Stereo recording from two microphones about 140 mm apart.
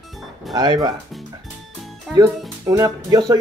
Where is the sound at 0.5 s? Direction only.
30° right (ahead or behind).